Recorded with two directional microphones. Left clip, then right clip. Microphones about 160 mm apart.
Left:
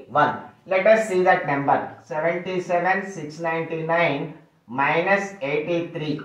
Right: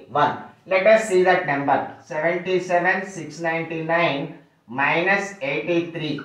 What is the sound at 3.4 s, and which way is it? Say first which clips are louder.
Speech: right 1 dB; centre (ahead or behind).